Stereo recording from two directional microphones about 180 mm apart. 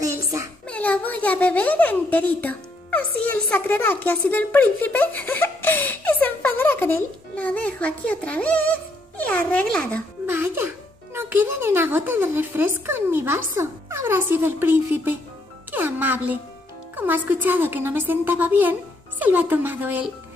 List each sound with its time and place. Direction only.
0.0 s a sound: 15° right (ahead or behind)
0.7 s a woman's voice: 10° left (ahead or behind)
10.2 s music: 15° right (ahead or behind)
11.1 s a woman's voice: 10° right (ahead or behind)